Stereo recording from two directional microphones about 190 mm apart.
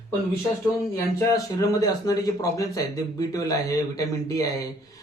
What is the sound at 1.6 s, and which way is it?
Speech, 20° left (ahead or behind).